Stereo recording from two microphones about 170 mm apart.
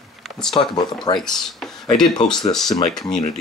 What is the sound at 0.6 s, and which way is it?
Speech, 30° left (ahead or behind).